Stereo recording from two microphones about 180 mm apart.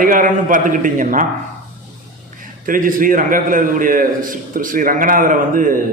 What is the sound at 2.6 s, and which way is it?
A man's voice, 50° right (ahead or behind).